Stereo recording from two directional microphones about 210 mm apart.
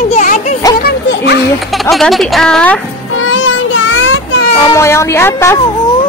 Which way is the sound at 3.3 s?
65° left (ahead or behind).